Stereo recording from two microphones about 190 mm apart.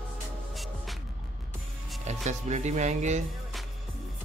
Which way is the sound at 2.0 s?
35° right (ahead or behind).